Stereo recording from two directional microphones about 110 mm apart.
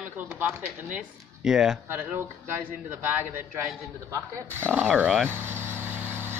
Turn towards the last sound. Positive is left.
turn(degrees=-5)  # may be behind; listen again after turning